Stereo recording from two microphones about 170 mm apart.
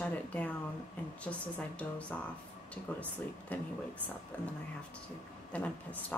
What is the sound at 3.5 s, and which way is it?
A woman's voice, 10° left (ahead or behind).